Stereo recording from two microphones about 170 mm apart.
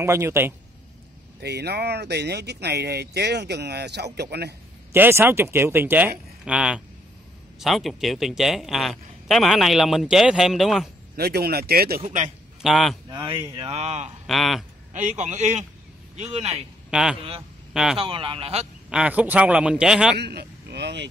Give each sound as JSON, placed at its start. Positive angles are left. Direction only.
{"t": 0.0, "sound": "speech", "side_deg": -15}
{"t": 1.4, "sound": "speech", "side_deg": -75}
{"t": 4.9, "sound": "a man's voice", "side_deg": -10}
{"t": 11.1, "sound": "speech", "side_deg": -65}
{"t": 12.6, "sound": "a man's voice", "side_deg": 0}
{"t": 13.1, "sound": "speech", "side_deg": -25}
{"t": 14.2, "sound": "a man's voice", "side_deg": 0}
{"t": 14.9, "sound": "a man's voice", "side_deg": -45}
{"t": 16.9, "sound": "a man's voice", "side_deg": -5}
{"t": 17.9, "sound": "speech", "side_deg": -30}
{"t": 18.9, "sound": "a man's voice", "side_deg": -5}
{"t": 20.2, "sound": "speech", "side_deg": -75}